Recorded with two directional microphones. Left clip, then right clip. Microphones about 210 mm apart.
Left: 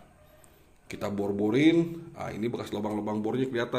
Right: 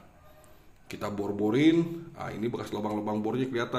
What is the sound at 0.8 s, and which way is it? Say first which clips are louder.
A man's voice: left 2 dB; 10° left (ahead or behind).